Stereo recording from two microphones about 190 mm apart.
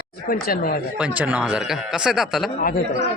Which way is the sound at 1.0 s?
10° right (ahead or behind).